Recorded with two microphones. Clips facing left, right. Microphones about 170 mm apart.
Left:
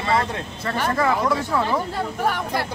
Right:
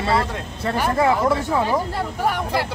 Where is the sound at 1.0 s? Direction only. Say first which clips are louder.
Right 3 dB; 20° right (ahead or behind).